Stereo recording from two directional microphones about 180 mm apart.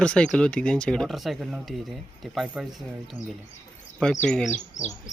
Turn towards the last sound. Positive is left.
turn(degrees=5)  # may be behind; listen again after turning